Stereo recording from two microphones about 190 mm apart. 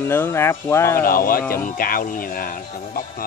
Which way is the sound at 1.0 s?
50° left (ahead or behind).